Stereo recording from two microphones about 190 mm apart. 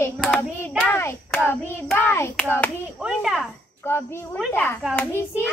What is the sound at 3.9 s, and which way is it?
A child's voice, 15° left (ahead or behind).